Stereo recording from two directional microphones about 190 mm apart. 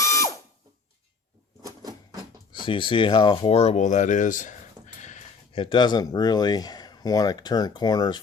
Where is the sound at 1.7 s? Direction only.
20° right (ahead or behind).